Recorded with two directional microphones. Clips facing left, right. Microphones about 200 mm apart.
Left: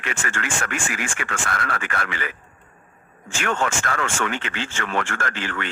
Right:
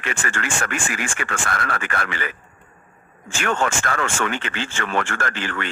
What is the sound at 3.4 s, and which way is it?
Speech, 50° right (ahead or behind).